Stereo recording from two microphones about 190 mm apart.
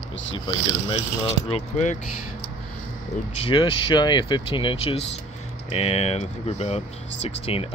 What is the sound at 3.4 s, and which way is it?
Speech, 25° left (ahead or behind).